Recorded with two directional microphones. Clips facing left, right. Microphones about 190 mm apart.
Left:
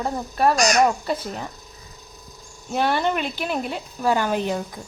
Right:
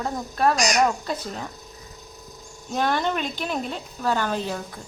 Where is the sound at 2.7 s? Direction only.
10° left (ahead or behind).